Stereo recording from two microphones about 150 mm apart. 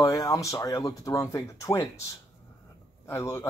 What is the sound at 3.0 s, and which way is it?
Speech, 20° left (ahead or behind).